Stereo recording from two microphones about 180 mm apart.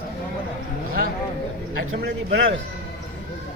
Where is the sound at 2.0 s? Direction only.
65° right (ahead or behind).